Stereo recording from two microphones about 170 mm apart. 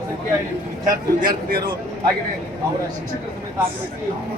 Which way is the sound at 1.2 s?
55° right (ahead or behind).